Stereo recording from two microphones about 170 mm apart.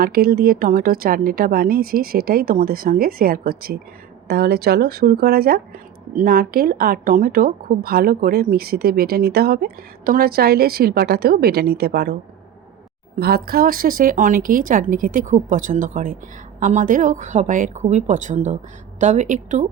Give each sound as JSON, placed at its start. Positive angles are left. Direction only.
{"t": 0.0, "sound": "speech", "side_deg": -60}
{"t": 13.1, "sound": "a woman's voice", "side_deg": -65}